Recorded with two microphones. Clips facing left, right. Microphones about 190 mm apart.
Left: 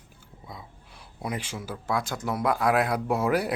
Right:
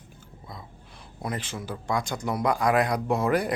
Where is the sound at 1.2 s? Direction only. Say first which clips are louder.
Even; 10° left (ahead or behind).